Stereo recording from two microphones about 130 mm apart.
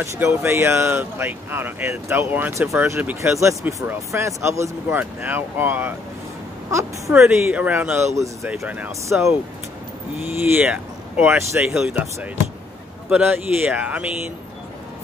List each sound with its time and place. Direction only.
0.0 s speech: 20° right (ahead or behind)
7.2 s speech: 10° right (ahead or behind)
10.4 s speech: 10° right (ahead or behind)